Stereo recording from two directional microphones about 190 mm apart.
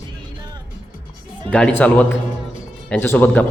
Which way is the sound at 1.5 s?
5° left (ahead or behind).